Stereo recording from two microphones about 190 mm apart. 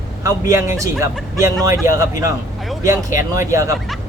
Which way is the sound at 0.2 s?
15° right (ahead or behind).